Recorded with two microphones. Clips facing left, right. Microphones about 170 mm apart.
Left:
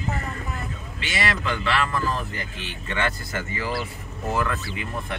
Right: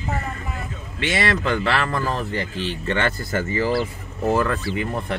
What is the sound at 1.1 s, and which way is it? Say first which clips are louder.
Speech: right 5 dB; 30° right (ahead or behind).